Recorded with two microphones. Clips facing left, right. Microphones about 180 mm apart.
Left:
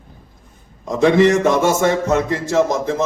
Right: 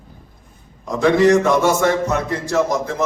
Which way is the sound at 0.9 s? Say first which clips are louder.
Left 1 dB; 20° left (ahead or behind).